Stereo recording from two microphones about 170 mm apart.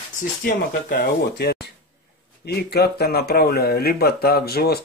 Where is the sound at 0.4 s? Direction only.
60° left (ahead or behind).